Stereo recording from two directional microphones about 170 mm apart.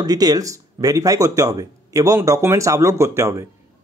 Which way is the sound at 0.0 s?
20° right (ahead or behind).